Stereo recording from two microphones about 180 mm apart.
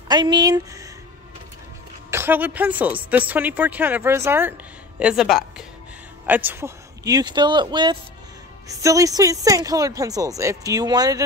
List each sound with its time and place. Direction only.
0.1 s speech: 25° right (ahead or behind)
2.0 s speech: 10° right (ahead or behind)